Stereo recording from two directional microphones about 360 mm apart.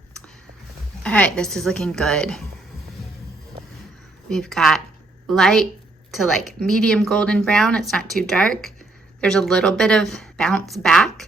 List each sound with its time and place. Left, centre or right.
1.0 s speech: centre
4.3 s speech: centre